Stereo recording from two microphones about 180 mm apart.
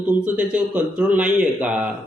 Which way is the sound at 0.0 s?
10° right (ahead or behind).